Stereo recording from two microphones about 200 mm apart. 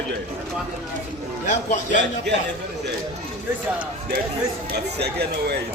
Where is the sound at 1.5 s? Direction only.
35° left (ahead or behind).